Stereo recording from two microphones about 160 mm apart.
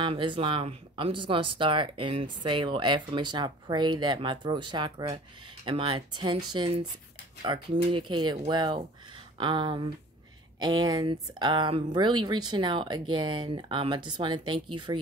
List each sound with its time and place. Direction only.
0.0 s speech: 30° right (ahead or behind)